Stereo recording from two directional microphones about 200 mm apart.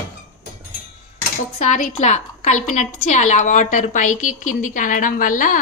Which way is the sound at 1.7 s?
35° left (ahead or behind).